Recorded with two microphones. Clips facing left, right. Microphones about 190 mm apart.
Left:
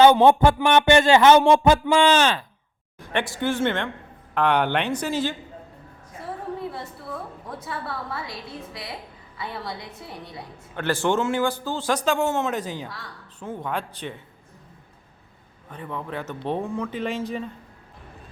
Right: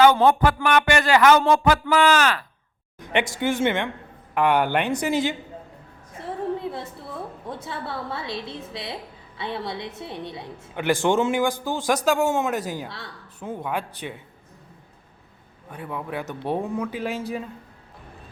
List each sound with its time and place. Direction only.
0.0 s speech: 25° left (ahead or behind)
3.1 s speech: 15° right (ahead or behind)
7.4 s a woman's voice: 25° right (ahead or behind)
10.8 s speech: 15° right (ahead or behind)
15.7 s speech: 10° right (ahead or behind)